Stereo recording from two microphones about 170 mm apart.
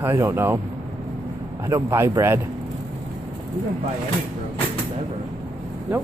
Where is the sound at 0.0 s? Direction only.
15° right (ahead or behind).